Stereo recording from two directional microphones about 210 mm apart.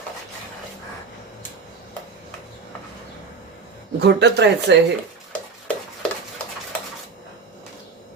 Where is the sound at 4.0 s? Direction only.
50° right (ahead or behind).